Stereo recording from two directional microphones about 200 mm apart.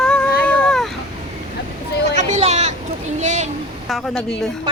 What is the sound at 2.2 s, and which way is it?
Speech, 35° right (ahead or behind).